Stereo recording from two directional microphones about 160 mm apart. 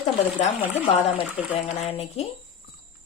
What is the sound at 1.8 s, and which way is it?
Speech, 40° left (ahead or behind).